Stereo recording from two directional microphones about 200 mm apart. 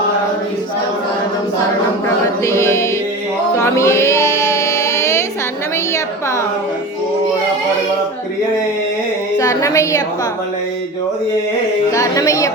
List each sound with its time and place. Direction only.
2.4 s music: 15° left (ahead or behind)
9.4 s a woman's voice: 15° left (ahead or behind)
11.9 s a sound: 15° left (ahead or behind)